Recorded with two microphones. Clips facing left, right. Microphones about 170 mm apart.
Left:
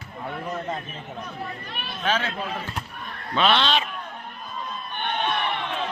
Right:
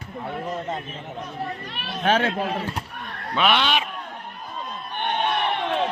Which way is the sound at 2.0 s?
55° right (ahead or behind).